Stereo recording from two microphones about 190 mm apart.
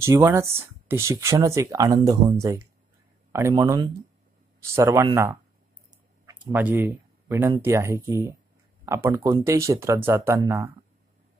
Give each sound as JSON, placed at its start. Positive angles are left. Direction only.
{"t": 0.0, "sound": "speech", "side_deg": -15}